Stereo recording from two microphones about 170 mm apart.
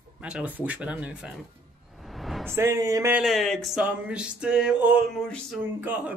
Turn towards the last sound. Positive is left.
turn(degrees=-10)  # may be behind; listen again after turning